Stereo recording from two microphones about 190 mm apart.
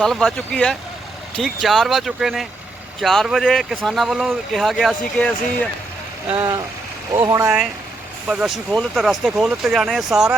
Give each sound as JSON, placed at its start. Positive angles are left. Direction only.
{"t": 0.0, "sound": "speech", "side_deg": 0}
{"t": 7.1, "sound": "speech", "side_deg": -15}
{"t": 8.3, "sound": "speech", "side_deg": -5}